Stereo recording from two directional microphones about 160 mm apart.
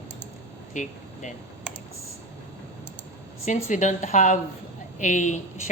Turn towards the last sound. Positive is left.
turn(degrees=50)  # may be behind; listen again after turning